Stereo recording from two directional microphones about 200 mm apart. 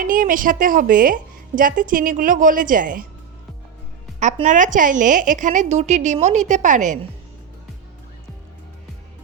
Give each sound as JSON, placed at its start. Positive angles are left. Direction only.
{"t": 0.0, "sound": "a woman's voice", "side_deg": -40}
{"t": 4.2, "sound": "a woman's voice", "side_deg": -35}